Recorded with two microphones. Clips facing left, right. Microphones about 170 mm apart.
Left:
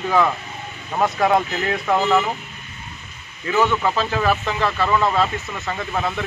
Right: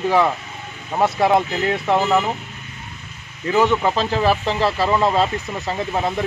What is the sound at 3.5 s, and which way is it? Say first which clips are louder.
Speech: right 2 dB; 20° right (ahead or behind).